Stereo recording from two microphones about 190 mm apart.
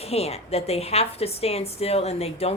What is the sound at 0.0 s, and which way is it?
A woman's voice, 35° left (ahead or behind).